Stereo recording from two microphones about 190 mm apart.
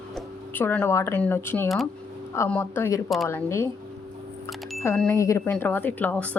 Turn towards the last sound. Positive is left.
turn(degrees=10)  # may be behind; listen again after turning